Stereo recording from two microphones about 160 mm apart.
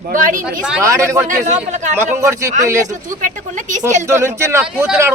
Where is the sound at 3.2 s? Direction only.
50° right (ahead or behind).